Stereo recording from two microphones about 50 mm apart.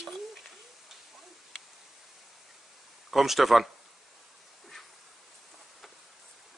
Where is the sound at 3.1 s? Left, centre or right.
Centre.